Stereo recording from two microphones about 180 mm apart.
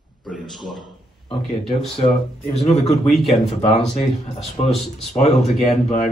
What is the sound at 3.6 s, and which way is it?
Speech, 30° left (ahead or behind).